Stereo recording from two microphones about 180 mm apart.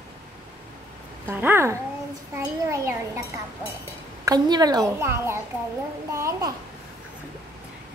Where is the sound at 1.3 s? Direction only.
10° right (ahead or behind).